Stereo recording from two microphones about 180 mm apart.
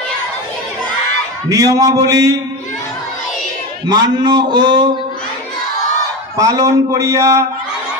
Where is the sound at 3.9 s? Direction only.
25° right (ahead or behind).